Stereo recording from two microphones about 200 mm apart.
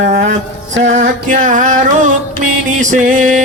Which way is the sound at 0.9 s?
35° right (ahead or behind).